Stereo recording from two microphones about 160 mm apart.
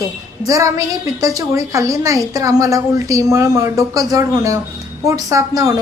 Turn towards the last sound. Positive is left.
turn(degrees=-20)  # may be behind; listen again after turning